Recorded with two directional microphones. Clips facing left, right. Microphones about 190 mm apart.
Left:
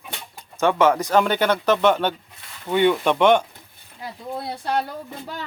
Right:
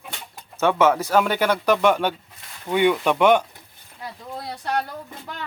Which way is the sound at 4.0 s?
25° left (ahead or behind).